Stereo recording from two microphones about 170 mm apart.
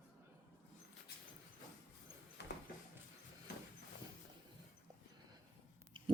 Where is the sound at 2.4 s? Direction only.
80° left.